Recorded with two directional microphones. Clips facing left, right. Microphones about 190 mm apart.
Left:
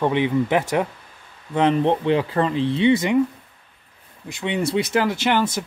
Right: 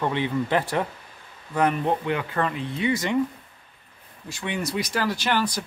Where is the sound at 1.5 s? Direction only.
25° left (ahead or behind).